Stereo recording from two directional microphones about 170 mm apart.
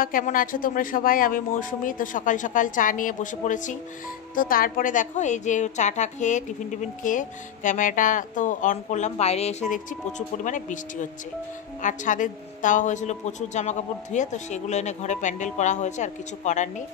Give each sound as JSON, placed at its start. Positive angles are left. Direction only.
{"t": 0.0, "sound": "speech", "side_deg": 55}